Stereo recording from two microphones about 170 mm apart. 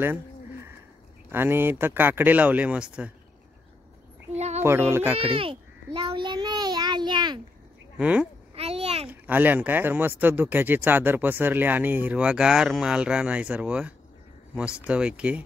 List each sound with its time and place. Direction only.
0.0 s a sound: 15° right (ahead or behind)
1.3 s speech: 15° right (ahead or behind)
4.4 s child singing: 40° right (ahead or behind)
4.6 s speech: 15° right (ahead or behind)
5.3 s speech: 30° right (ahead or behind)
5.9 s child singing: 30° right (ahead or behind)
8.0 s speech: 5° right (ahead or behind)
8.5 s a sound: 35° right (ahead or behind)
9.1 s speech: 10° right (ahead or behind)